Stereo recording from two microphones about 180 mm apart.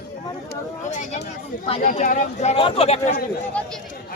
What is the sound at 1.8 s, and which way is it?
Speech, 50° left (ahead or behind).